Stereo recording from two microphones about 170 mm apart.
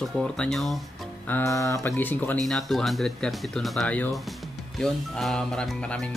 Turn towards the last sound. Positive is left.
turn(degrees=5)  # may be behind; listen again after turning